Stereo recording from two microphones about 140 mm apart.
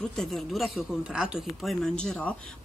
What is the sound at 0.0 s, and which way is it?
Speech, 5° left (ahead or behind).